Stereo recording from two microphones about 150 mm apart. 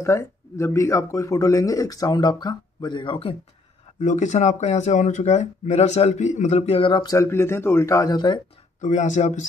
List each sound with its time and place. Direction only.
0.0 s speech: 20° left (ahead or behind); by 3.3 s 35° left (ahead or behind)
4.0 s speech: 55° left (ahead or behind)
6.9 s speech: 25° left (ahead or behind)
8.8 s speech: 55° left (ahead or behind)